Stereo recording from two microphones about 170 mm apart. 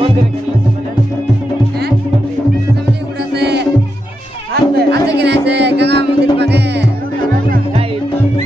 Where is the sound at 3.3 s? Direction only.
80° right.